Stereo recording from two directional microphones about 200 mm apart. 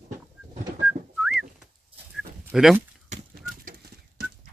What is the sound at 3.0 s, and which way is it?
Chicken, 40° right (ahead or behind).